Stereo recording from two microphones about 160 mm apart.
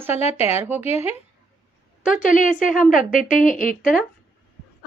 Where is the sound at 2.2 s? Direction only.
55° left (ahead or behind).